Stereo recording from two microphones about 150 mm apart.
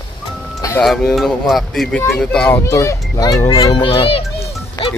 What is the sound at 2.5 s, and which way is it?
A child's voice, 20° left (ahead or behind).